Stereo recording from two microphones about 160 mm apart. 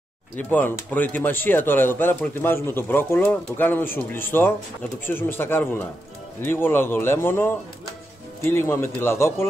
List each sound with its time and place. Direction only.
0.4 s speech: 10° left (ahead or behind)